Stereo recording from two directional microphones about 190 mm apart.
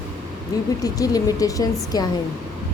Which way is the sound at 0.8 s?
20° left (ahead or behind).